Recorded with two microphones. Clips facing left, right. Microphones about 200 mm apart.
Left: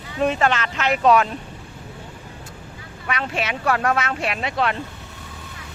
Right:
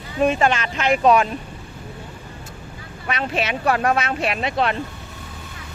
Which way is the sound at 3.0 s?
20° right (ahead or behind).